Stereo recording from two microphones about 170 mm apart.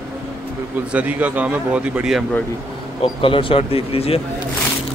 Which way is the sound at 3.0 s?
30° left (ahead or behind).